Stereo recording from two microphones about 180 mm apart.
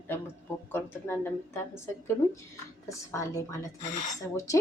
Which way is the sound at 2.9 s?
15° left (ahead or behind).